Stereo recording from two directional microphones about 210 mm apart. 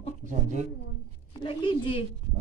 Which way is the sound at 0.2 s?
35° right (ahead or behind).